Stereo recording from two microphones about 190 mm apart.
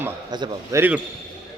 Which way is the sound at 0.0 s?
20° right (ahead or behind).